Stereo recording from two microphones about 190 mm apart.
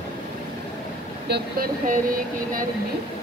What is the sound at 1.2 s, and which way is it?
Speech, 55° right (ahead or behind).